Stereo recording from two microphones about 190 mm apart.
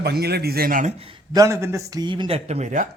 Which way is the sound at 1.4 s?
15° right (ahead or behind).